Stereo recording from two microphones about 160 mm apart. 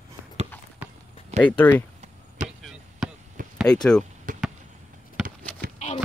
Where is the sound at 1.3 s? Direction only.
40° right (ahead or behind).